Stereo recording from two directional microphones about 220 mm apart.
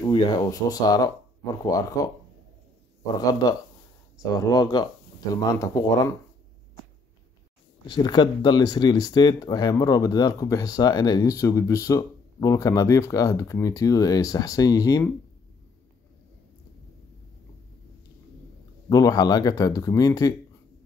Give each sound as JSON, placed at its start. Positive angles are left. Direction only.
{"t": 0.0, "sound": "speech", "side_deg": 20}
{"t": 3.2, "sound": "speech", "side_deg": 15}
{"t": 7.8, "sound": "speech", "side_deg": 20}
{"t": 18.9, "sound": "speech", "side_deg": 15}